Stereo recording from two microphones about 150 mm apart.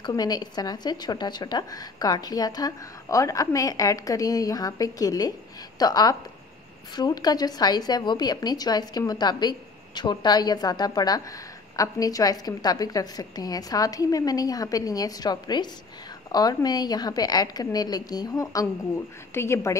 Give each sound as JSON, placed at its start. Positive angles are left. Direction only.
{"t": 0.0, "sound": "a woman's voice", "side_deg": 25}